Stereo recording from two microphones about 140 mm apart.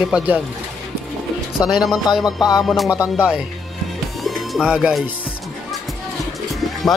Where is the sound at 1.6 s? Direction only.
Centre (ahead or behind).